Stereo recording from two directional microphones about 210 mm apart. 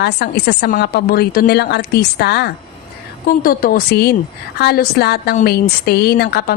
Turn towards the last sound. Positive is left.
turn(degrees=50)  # may be behind; listen again after turning